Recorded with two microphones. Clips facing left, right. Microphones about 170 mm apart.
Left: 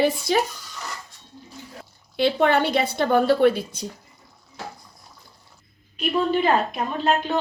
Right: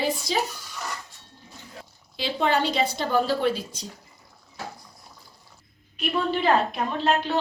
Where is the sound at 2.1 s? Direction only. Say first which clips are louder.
Left 5 dB; 60° left (ahead or behind).